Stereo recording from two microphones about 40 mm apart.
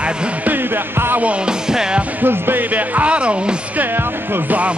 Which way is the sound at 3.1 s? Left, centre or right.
Right.